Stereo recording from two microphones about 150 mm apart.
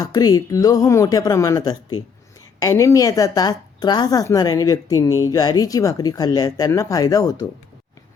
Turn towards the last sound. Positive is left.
turn(degrees=25)  # may be behind; listen again after turning